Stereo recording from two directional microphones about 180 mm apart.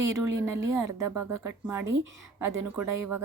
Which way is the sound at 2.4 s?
15° right (ahead or behind).